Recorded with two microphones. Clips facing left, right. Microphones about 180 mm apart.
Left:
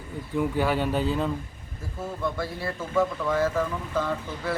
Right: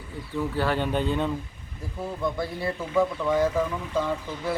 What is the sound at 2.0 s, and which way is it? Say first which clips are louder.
Speech: right 1 dB; 15° right (ahead or behind).